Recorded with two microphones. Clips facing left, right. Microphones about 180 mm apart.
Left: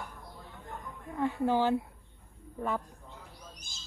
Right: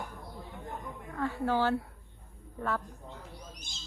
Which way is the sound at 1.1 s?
15° left (ahead or behind).